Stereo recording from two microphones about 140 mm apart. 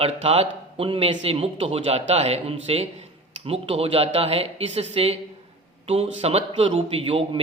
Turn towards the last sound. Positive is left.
turn(degrees=-40)  # may be behind; listen again after turning